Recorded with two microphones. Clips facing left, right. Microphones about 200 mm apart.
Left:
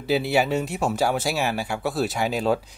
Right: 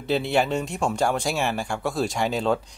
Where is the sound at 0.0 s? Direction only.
5° left (ahead or behind).